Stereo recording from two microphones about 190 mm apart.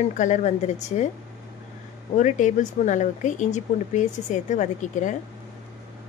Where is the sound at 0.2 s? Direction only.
40° left (ahead or behind).